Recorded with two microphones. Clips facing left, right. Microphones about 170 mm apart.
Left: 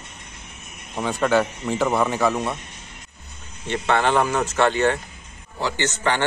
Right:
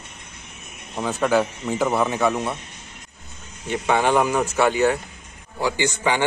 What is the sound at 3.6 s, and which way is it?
Speech, 10° right (ahead or behind).